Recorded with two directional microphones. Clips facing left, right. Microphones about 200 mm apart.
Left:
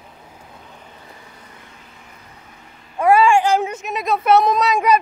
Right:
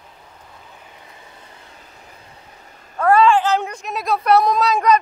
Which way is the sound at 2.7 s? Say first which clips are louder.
Even; 45° right (ahead or behind).